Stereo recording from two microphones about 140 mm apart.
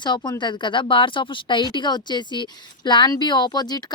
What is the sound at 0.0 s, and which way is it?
Speech, 30° left (ahead or behind).